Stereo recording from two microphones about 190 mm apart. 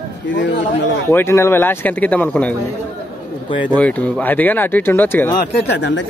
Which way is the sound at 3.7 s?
5° left (ahead or behind).